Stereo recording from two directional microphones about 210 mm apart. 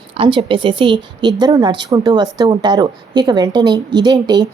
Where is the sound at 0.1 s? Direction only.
25° right (ahead or behind).